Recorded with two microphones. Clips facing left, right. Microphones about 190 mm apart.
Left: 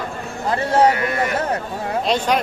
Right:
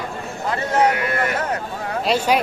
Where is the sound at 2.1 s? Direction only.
10° right (ahead or behind).